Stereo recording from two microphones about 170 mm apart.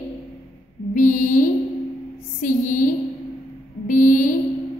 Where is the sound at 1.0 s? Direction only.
50° left (ahead or behind).